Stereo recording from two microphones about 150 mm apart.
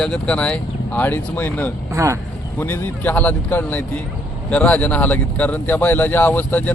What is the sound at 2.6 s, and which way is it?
Speech, 15° left (ahead or behind).